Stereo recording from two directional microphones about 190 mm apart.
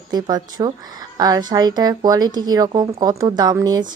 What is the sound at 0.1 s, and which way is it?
A woman's voice, 20° right (ahead or behind).